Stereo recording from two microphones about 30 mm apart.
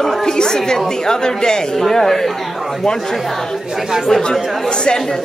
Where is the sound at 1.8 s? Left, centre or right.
Centre.